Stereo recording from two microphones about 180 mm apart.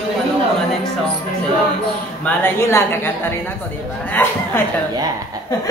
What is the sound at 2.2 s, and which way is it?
A woman's voice, 10° left (ahead or behind).